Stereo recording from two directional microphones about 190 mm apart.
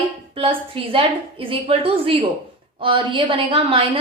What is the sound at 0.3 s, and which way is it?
A woman's voice, 30° right (ahead or behind).